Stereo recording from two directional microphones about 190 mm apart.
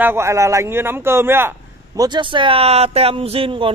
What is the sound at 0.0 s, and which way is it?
Speech, 15° right (ahead or behind).